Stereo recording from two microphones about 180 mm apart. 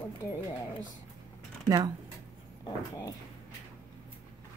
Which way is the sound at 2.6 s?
20° left (ahead or behind).